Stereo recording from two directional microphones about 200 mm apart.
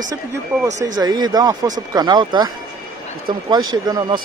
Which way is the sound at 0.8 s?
20° right (ahead or behind).